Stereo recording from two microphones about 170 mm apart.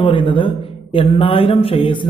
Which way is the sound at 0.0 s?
30° left (ahead or behind).